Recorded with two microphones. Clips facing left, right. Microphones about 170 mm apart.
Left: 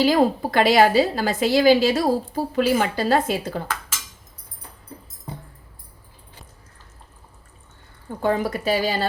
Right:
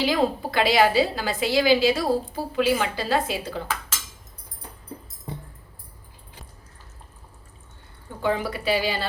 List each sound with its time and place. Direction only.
0.0 s a woman's voice: 45° left (ahead or behind)
8.2 s a woman's voice: 45° left (ahead or behind)